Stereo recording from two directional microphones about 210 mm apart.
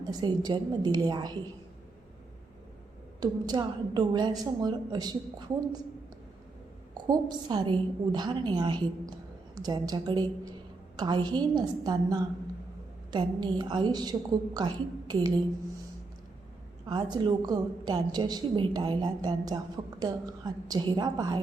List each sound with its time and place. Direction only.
0.1 s a woman's voice: 20° right (ahead or behind)
3.2 s a woman's voice: 20° right (ahead or behind)
6.9 s a woman's voice: 20° right (ahead or behind)
16.9 s a woman's voice: 20° right (ahead or behind)